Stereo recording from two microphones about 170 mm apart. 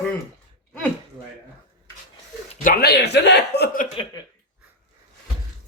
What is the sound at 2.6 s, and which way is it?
Speech, 65° left (ahead or behind).